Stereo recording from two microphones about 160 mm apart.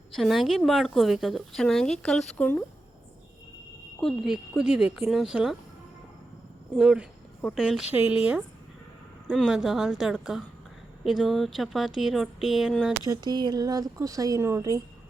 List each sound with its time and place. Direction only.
0.2 s a woman's voice: centre (ahead or behind)
4.0 s a woman's voice: centre (ahead or behind)
6.7 s a woman's voice: 5° right (ahead or behind)
13.1 s speech: 25° right (ahead or behind)